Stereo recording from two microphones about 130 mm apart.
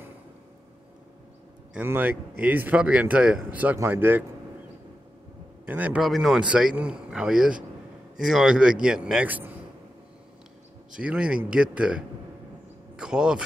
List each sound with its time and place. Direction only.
1.7 s a man's voice: 15° right (ahead or behind)
5.7 s a man's voice: 10° right (ahead or behind)
6.0 s a man's voice: centre (ahead or behind)
10.9 s a man's voice: 10° right (ahead or behind)